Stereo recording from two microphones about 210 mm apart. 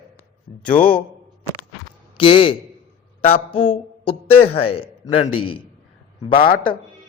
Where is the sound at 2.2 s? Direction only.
25° left (ahead or behind).